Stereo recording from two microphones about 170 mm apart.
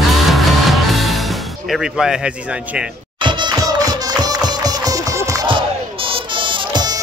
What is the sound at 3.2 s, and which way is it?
Music, 25° right (ahead or behind).